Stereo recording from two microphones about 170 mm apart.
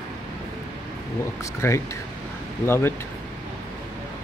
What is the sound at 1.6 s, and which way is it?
Speech, 15° left (ahead or behind).